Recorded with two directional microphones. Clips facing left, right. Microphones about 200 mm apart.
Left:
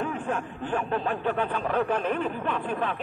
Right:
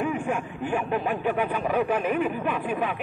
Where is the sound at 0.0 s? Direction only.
10° right (ahead or behind).